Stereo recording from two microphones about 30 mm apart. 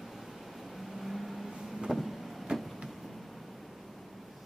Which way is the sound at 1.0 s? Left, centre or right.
Centre.